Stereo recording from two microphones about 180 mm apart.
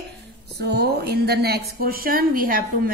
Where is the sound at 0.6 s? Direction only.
65° right (ahead or behind).